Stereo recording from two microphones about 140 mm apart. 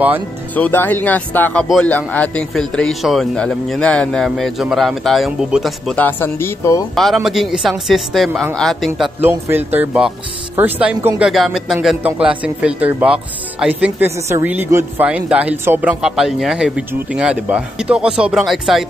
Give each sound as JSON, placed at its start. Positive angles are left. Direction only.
{"t": 0.6, "sound": "a man's voice", "side_deg": 15}
{"t": 5.9, "sound": "speech", "side_deg": 15}
{"t": 7.2, "sound": "a man's voice", "side_deg": 0}
{"t": 9.2, "sound": "a man's voice", "side_deg": -15}